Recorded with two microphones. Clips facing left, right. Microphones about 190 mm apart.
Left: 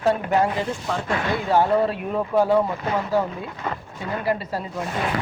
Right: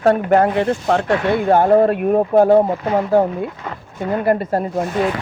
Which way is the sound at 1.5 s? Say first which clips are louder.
Right 6 dB; 50° right (ahead or behind).